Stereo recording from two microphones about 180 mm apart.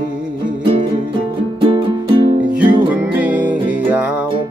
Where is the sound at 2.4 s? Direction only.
5° right (ahead or behind).